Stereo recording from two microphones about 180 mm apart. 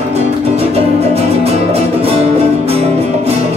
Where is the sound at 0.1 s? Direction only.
35° right (ahead or behind).